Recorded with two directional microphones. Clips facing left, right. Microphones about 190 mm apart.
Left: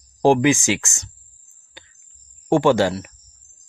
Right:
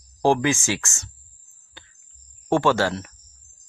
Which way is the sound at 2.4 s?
15° left (ahead or behind).